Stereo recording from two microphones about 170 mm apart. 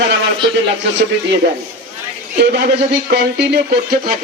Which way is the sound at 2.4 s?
70° right (ahead or behind).